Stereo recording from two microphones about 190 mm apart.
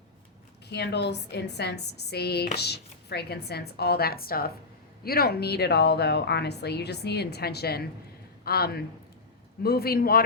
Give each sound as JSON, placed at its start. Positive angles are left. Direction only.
{"t": 0.7, "sound": "a man's voice", "side_deg": 60}